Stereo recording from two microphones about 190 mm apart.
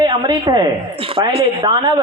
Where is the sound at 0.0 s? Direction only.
20° right (ahead or behind).